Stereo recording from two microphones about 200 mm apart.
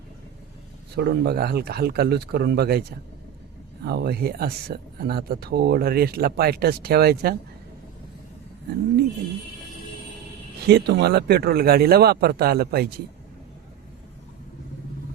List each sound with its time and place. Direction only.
0.9 s speech: 50° right (ahead or behind)
3.8 s speech: 50° right (ahead or behind)
10.7 s speech: 55° right (ahead or behind)